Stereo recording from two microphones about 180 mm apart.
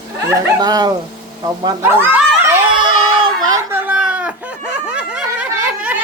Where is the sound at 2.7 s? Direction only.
25° right (ahead or behind).